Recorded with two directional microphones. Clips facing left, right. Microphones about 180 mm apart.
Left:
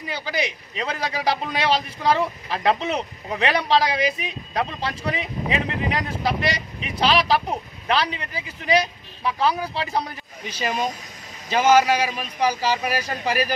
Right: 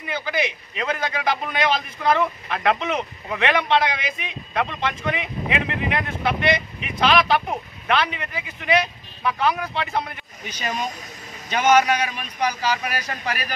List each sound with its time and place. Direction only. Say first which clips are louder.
0.1 s a man's voice: right 2 dB; 35° left (ahead or behind)